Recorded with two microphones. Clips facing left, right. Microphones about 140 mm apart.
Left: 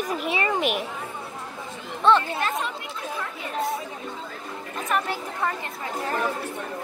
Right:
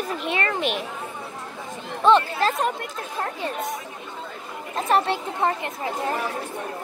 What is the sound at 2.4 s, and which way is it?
Speech, 35° right (ahead or behind).